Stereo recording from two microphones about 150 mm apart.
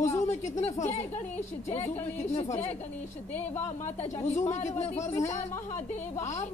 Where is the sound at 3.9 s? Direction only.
45° left (ahead or behind).